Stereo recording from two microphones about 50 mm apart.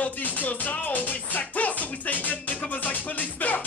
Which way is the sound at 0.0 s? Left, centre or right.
Left.